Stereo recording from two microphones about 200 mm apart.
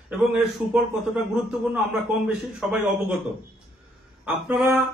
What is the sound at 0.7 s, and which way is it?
A man's voice, 5° right (ahead or behind).